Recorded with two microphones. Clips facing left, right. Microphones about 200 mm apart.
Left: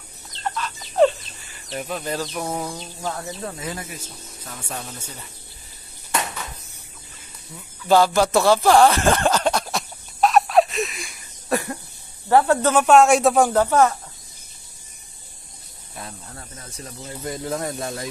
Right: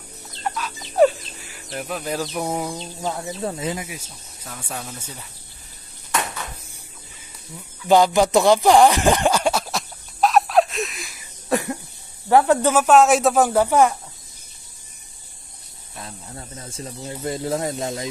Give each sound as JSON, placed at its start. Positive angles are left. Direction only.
{"t": 0.3, "sound": "chicken", "side_deg": -10}
{"t": 3.4, "sound": "speech", "side_deg": -30}
{"t": 3.7, "sound": "speech", "side_deg": -10}
{"t": 7.9, "sound": "a sound", "side_deg": -15}
{"t": 11.5, "sound": "a sound", "side_deg": -15}
{"t": 12.3, "sound": "speech", "side_deg": -15}
{"t": 12.8, "sound": "speech", "side_deg": 0}
{"t": 16.3, "sound": "speech", "side_deg": -25}